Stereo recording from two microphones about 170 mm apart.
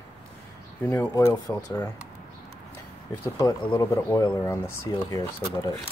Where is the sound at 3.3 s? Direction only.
25° left (ahead or behind).